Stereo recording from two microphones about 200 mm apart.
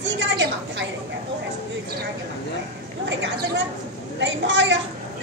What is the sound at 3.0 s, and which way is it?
A woman's voice, 65° right (ahead or behind).